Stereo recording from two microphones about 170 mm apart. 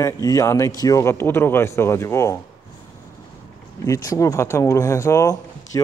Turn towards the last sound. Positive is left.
turn(degrees=15)  # may be behind; listen again after turning